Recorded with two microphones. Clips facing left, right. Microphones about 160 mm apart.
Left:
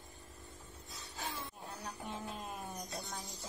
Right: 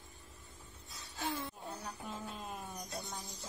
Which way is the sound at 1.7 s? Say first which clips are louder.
Even; centre (ahead or behind).